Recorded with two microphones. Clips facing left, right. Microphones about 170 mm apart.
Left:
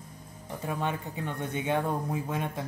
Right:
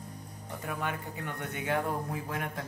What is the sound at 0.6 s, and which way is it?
Speech, 25° left (ahead or behind).